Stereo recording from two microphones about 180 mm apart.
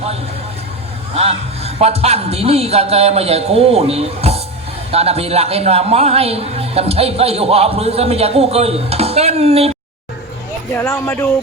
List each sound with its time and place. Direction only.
1.1 s a man's voice: 35° right (ahead or behind)
10.8 s speech: 15° left (ahead or behind)